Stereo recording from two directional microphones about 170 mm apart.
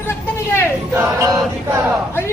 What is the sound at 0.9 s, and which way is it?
Chant, 15° right (ahead or behind).